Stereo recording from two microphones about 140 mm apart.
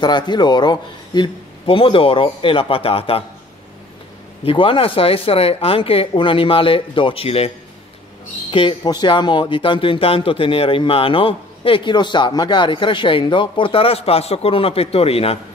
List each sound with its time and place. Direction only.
0.0 s speech: 30° left (ahead or behind)
4.5 s speech: 40° left (ahead or behind)